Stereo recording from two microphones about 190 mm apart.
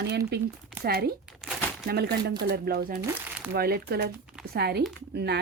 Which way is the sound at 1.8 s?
55° right (ahead or behind).